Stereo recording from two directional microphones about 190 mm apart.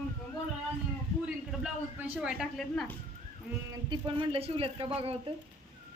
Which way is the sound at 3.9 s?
30° right (ahead or behind).